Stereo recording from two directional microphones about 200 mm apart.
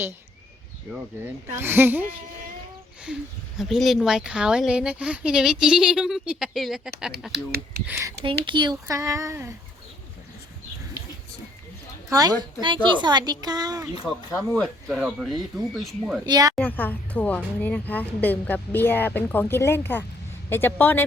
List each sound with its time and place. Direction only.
1.2 s speech: 10° right (ahead or behind)
3.6 s speech: centre (ahead or behind)
7.9 s speech: 15° right (ahead or behind)
12.1 s a woman's voice: 20° right (ahead or behind)
14.1 s speech: centre (ahead or behind)
16.2 s a woman's voice: 20° right (ahead or behind)
16.6 s a woman's voice: 10° left (ahead or behind)